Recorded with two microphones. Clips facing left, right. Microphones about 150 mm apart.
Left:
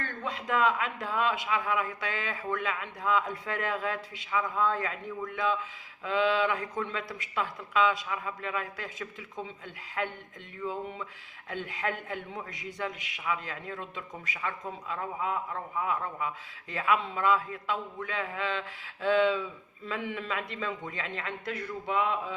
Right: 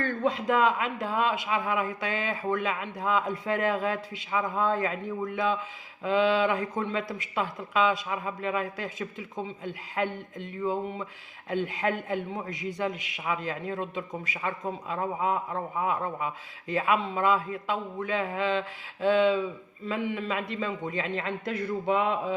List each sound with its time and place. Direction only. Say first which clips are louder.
0.3 s a man's voice: right 3 dB; 20° right (ahead or behind)
10.6 s a man's voice: right 5 dB; 25° right (ahead or behind)